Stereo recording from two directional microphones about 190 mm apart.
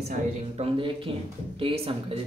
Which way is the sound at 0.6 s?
30° right (ahead or behind).